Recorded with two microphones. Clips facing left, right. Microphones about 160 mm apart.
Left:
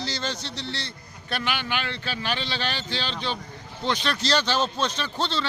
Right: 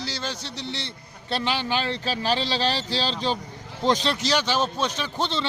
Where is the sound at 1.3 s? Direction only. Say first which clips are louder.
Right 3 dB; 30° right (ahead or behind).